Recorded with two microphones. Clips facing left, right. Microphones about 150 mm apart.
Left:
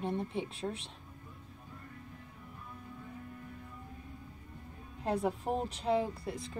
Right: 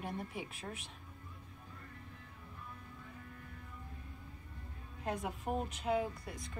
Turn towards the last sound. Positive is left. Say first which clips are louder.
# left 5 dB
turn(degrees=30)  # may be behind; listen again after turning